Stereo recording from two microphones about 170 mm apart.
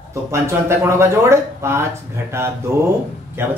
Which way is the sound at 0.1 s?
15° right (ahead or behind).